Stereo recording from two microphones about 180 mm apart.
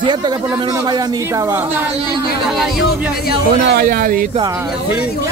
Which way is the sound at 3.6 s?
60° right (ahead or behind).